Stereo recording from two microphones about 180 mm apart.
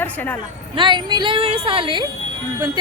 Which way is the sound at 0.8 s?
25° right (ahead or behind).